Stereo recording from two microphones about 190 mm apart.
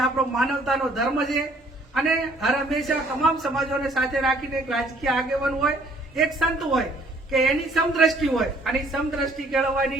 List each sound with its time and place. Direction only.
0.0 s a man's voice: centre (ahead or behind)